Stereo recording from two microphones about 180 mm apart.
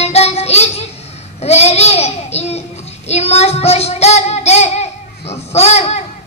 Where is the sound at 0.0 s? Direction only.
35° left (ahead or behind).